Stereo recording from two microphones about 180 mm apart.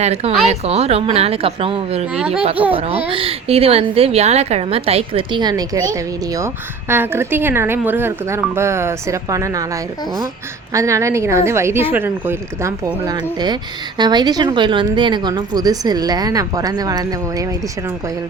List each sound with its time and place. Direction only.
0.0 s a woman's voice: 35° right (ahead or behind); by 9.6 s 20° right (ahead or behind)
10.7 s a woman's voice: 15° right (ahead or behind)